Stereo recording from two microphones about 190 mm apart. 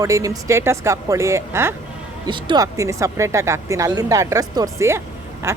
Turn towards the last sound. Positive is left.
turn(degrees=-15)  # may be behind; listen again after turning